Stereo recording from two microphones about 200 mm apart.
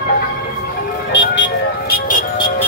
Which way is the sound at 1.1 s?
65° left (ahead or behind).